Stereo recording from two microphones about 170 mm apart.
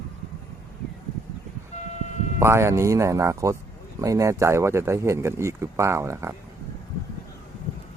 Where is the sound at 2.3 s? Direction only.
15° right (ahead or behind).